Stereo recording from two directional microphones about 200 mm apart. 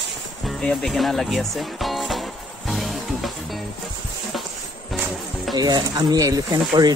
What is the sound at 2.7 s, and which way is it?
Music, centre (ahead or behind).